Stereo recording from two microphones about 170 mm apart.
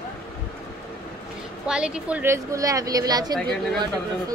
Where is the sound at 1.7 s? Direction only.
5° right (ahead or behind); by 3.4 s 25° right (ahead or behind).